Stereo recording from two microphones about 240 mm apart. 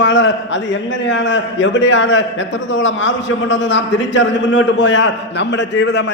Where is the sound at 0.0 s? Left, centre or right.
Left.